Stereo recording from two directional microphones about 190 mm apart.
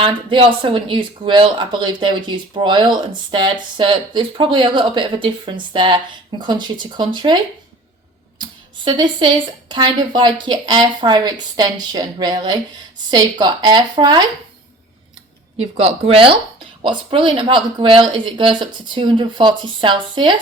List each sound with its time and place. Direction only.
0.0 s speech: 25° right (ahead or behind)
15.5 s speech: 30° right (ahead or behind)